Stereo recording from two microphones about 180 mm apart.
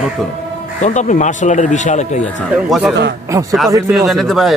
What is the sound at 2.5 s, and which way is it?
Speech, centre (ahead or behind).